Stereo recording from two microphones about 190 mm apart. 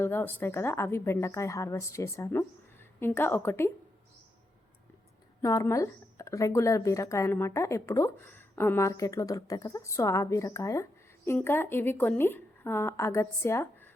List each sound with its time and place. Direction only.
0.0 s speech: 10° left (ahead or behind)
5.4 s speech: 15° left (ahead or behind)